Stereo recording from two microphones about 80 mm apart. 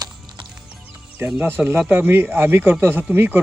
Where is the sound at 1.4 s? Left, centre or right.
Right.